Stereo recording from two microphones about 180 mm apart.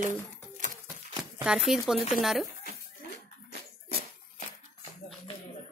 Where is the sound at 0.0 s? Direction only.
45° right (ahead or behind).